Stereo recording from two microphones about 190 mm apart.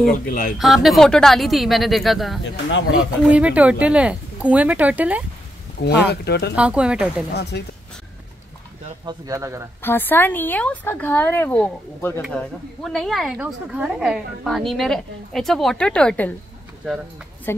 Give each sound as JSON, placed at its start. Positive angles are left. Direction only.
{"t": 0.0, "sound": "speech", "side_deg": 50}
{"t": 0.6, "sound": "a woman's voice", "side_deg": 0}
{"t": 5.8, "sound": "speech", "side_deg": 60}
{"t": 6.5, "sound": "a woman's voice", "side_deg": -5}
{"t": 7.5, "sound": "speech", "side_deg": 60}
{"t": 9.0, "sound": "speech", "side_deg": -20}
{"t": 9.8, "sound": "a woman's voice", "side_deg": 10}
{"t": 17.5, "sound": "a woman's voice", "side_deg": 10}